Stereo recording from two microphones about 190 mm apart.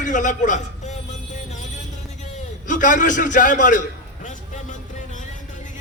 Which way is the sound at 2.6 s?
40° left (ahead or behind).